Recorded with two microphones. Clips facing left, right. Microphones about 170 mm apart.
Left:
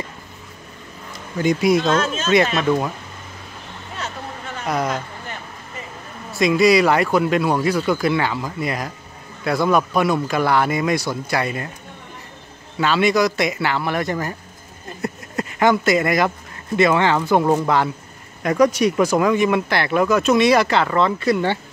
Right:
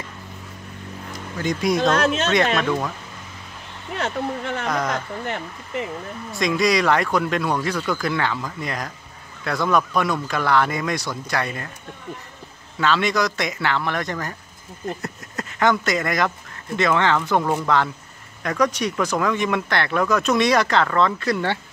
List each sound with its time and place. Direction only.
1.4 s speech: 5° left (ahead or behind)
3.9 s speech: 65° right (ahead or behind)
4.6 s speech: 10° left (ahead or behind)
5.2 s speech: 70° right (ahead or behind)
6.3 s speech: 5° left (ahead or behind)
12.7 s speech: 10° left (ahead or behind)